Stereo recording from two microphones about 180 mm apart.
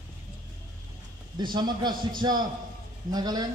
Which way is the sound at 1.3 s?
25° right (ahead or behind).